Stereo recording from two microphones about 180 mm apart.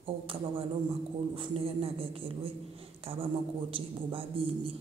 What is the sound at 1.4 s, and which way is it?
A man's voice, 30° right (ahead or behind).